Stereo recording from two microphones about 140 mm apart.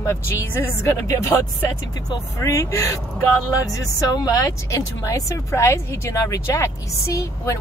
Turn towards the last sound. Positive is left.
turn(degrees=20)  # may be behind; listen again after turning